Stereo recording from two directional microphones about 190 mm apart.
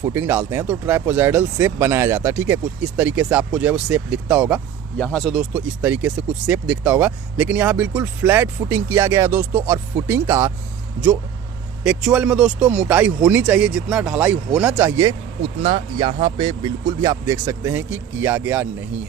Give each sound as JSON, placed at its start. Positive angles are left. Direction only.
{"t": 0.0, "sound": "speech", "side_deg": -15}
{"t": 4.9, "sound": "speech", "side_deg": 5}
{"t": 11.8, "sound": "speech", "side_deg": -5}
{"t": 15.6, "sound": "speech", "side_deg": -25}